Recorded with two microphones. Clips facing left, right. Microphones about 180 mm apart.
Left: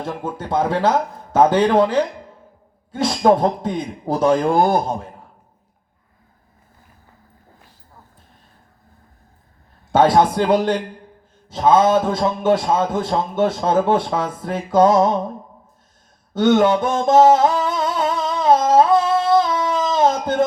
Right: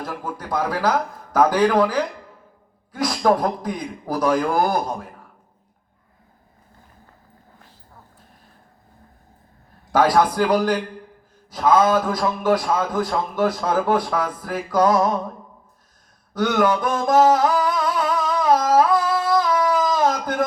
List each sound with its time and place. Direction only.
0.0 s a man's voice: 25° left (ahead or behind)
9.9 s a man's voice: 25° left (ahead or behind)
16.3 s a sound: 25° left (ahead or behind)